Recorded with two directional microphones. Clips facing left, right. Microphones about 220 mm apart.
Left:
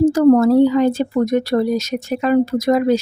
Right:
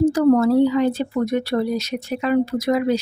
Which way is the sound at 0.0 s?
45° left (ahead or behind).